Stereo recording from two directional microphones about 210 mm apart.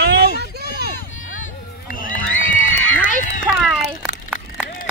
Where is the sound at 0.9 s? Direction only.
40° left (ahead or behind).